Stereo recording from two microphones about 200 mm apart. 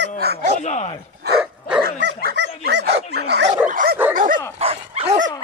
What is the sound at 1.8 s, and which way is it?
Dog, 50° right (ahead or behind).